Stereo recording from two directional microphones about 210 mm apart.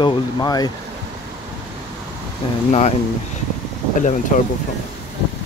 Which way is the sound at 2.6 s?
35° left (ahead or behind).